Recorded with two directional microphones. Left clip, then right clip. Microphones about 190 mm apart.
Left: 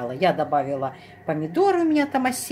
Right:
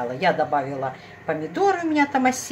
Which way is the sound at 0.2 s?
50° left (ahead or behind).